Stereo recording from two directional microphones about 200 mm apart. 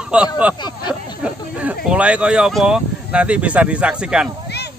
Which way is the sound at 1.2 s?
5° right (ahead or behind).